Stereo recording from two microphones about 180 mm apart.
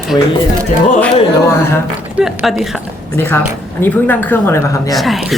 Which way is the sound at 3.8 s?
10° left (ahead or behind).